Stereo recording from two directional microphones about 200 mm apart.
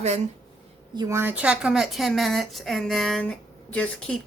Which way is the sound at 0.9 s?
15° right (ahead or behind).